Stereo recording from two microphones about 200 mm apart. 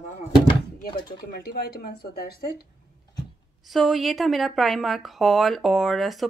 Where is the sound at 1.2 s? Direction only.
50° left (ahead or behind).